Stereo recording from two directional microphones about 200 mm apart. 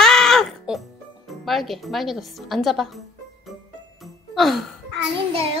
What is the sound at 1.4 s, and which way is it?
Speech, centre (ahead or behind).